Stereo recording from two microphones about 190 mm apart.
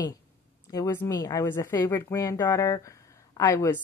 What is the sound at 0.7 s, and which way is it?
A woman's voice, 15° left (ahead or behind).